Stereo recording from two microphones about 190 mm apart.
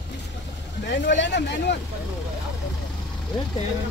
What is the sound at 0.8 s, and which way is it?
Speech, 70° left (ahead or behind).